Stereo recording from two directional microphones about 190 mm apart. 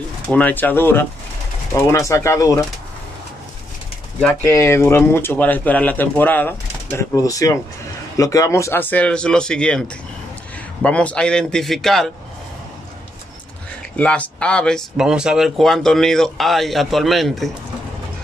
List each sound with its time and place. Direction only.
0.3 s speech: 10° left (ahead or behind)
4.2 s speech: 10° left (ahead or behind)
13.9 s speech: 5° left (ahead or behind)